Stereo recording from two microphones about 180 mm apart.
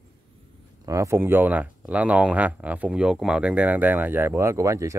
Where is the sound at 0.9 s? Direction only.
15° right (ahead or behind).